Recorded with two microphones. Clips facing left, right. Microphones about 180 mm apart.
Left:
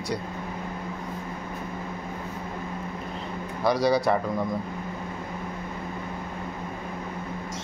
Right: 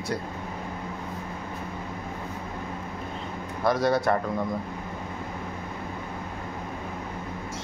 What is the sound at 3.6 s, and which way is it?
Speech, centre (ahead or behind).